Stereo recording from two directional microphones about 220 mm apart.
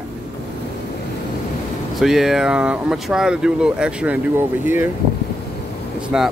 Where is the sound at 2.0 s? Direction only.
Centre (ahead or behind).